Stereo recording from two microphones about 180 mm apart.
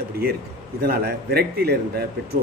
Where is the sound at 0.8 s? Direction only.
60° right (ahead or behind).